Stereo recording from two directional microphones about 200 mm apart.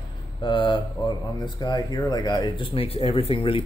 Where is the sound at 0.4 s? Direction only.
25° left (ahead or behind).